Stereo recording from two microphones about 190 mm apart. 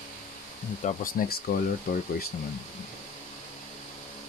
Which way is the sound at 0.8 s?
50° left (ahead or behind).